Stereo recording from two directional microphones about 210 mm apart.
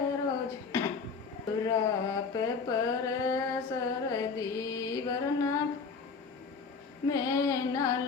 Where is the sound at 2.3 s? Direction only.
15° left (ahead or behind).